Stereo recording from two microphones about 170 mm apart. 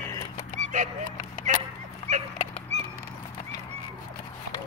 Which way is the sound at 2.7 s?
40° right (ahead or behind).